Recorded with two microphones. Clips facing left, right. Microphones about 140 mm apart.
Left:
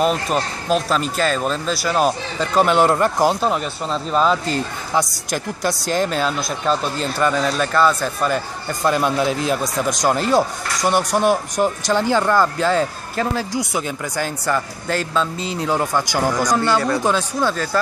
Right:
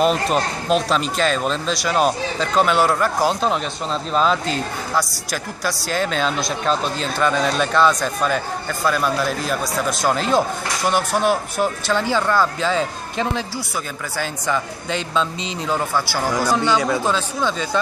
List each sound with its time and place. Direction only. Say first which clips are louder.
0.0 s speech: right 1 dB; centre (ahead or behind)
2.5 s speech: left 2 dB; 15° left (ahead or behind)
8.8 s speech: left 3 dB; 20° left (ahead or behind)
16.5 s speech: left 1 dB; 5° left (ahead or behind)